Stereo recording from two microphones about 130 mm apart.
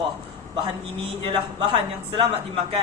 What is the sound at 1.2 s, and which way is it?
A man's voice, 40° right (ahead or behind).